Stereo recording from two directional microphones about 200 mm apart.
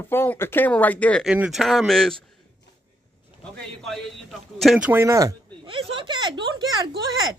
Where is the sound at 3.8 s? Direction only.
Centre (ahead or behind); by 6.3 s 25° right (ahead or behind).